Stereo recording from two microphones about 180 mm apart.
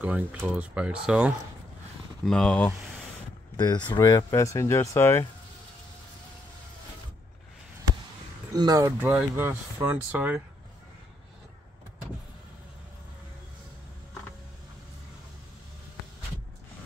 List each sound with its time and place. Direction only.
0.0 s speech: 10° right (ahead or behind)
3.5 s speech: 25° left (ahead or behind)
8.5 s speech: 20° right (ahead or behind)
9.0 s speech: 10° right (ahead or behind)